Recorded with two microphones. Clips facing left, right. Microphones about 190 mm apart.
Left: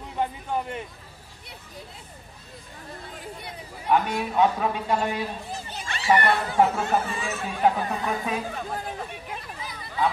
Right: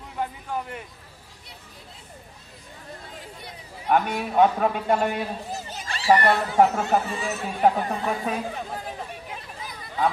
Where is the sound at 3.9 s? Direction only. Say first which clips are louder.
Right 1 dB; 50° right (ahead or behind).